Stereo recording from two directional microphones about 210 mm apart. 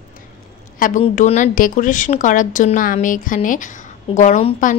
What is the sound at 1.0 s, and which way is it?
Speech, 35° left (ahead or behind).